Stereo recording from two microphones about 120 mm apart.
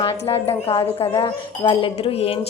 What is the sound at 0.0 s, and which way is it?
A woman's voice, 55° left (ahead or behind).